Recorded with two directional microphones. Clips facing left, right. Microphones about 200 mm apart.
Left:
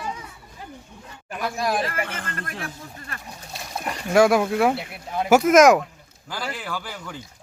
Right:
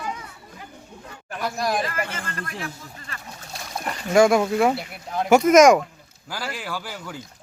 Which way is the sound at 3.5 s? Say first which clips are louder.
Even; centre (ahead or behind).